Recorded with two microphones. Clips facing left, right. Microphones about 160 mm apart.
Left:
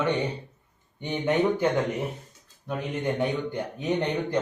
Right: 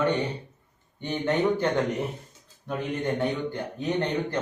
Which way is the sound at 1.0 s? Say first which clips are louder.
Left 1 dB; 15° left (ahead or behind).